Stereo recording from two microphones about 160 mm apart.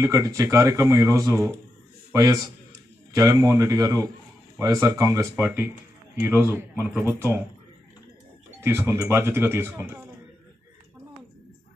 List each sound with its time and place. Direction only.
0.0 s speech: 20° right (ahead or behind)
8.6 s speech: 15° right (ahead or behind)